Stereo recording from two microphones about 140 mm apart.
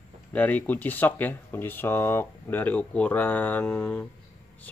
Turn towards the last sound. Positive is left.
turn(degrees=10)  # may be behind; listen again after turning